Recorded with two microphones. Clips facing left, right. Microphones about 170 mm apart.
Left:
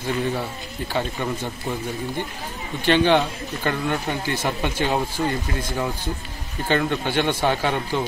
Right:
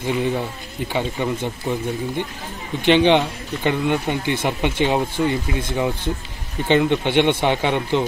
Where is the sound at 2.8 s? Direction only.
20° right (ahead or behind).